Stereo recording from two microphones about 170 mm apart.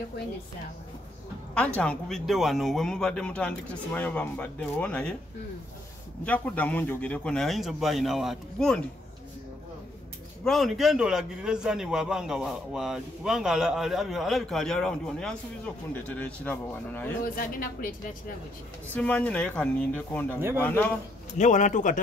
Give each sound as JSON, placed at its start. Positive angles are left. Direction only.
{"t": 1.8, "sound": "a man's voice", "side_deg": 5}
{"t": 6.2, "sound": "a man's voice", "side_deg": 10}
{"t": 10.4, "sound": "a man's voice", "side_deg": 0}
{"t": 17.2, "sound": "speech", "side_deg": 55}
{"t": 18.9, "sound": "speech", "side_deg": 10}
{"t": 20.3, "sound": "speech", "side_deg": -15}
{"t": 20.6, "sound": "speech", "side_deg": 10}
{"t": 21.4, "sound": "a man's voice", "side_deg": 45}